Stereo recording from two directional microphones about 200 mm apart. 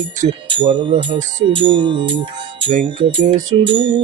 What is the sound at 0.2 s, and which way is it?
Music, 25° right (ahead or behind).